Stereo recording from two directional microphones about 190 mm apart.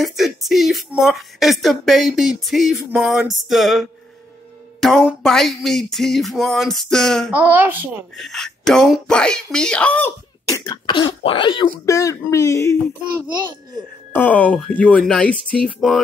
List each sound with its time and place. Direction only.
0.0 s speech: centre (ahead or behind)
7.3 s speech: 10° right (ahead or behind)
8.2 s speech: centre (ahead or behind)
10.7 s speech: 25° left (ahead or behind)
14.1 s speech: 10° left (ahead or behind)